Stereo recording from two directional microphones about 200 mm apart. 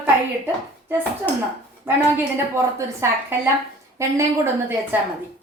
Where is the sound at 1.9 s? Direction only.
10° right (ahead or behind).